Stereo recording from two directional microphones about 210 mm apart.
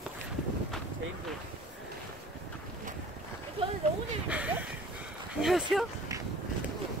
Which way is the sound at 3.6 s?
25° right (ahead or behind).